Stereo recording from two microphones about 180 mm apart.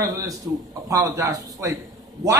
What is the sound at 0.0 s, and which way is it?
A man's voice, 20° right (ahead or behind).